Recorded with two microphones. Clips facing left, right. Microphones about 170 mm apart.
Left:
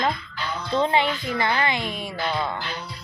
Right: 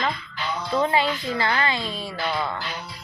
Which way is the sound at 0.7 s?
25° left (ahead or behind).